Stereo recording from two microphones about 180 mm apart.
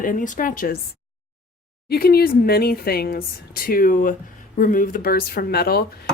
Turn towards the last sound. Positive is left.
turn(degrees=60)  # may be behind; listen again after turning